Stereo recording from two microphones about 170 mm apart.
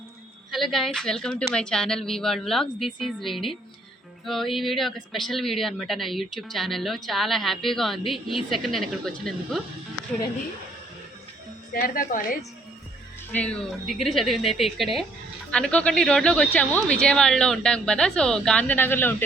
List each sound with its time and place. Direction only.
0.5 s a woman's voice: centre (ahead or behind)
11.7 s speech: 55° left (ahead or behind)
13.3 s a woman's voice: 5° left (ahead or behind)